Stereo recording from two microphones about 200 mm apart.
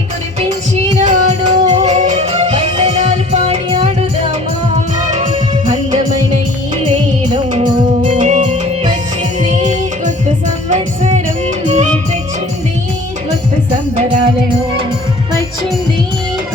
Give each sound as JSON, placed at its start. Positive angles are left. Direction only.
{"t": 1.0, "sound": "music", "side_deg": -35}
{"t": 7.6, "sound": "music", "side_deg": -35}